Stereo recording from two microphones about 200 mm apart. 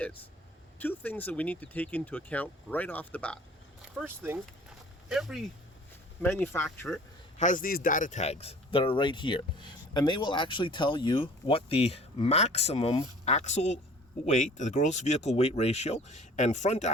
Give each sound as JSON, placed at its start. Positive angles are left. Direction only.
{"t": 0.0, "sound": "speech", "side_deg": 10}
{"t": 3.9, "sound": "speech", "side_deg": -10}
{"t": 6.4, "sound": "speech", "side_deg": 10}
{"t": 7.3, "sound": "speech", "side_deg": 40}